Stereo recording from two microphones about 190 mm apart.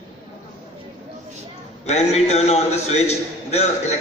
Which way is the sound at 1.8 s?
35° left (ahead or behind).